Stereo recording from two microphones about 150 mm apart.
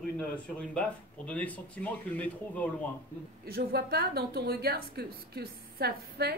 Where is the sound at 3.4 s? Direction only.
90° right.